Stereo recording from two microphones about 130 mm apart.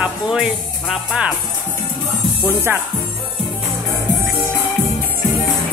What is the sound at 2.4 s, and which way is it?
Speech, 15° right (ahead or behind).